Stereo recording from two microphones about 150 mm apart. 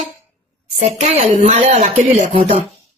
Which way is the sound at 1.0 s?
45° right (ahead or behind).